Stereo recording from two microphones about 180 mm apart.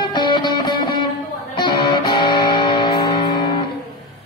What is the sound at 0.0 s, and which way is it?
Music, 25° left (ahead or behind).